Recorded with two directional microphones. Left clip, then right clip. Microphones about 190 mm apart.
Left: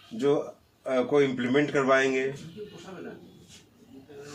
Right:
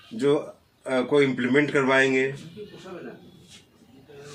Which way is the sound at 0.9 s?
10° right (ahead or behind).